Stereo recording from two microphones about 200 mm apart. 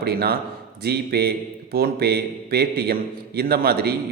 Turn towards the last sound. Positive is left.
turn(degrees=-50)  # may be behind; listen again after turning